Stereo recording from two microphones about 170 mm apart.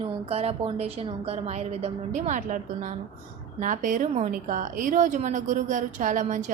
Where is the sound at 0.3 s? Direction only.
35° right (ahead or behind).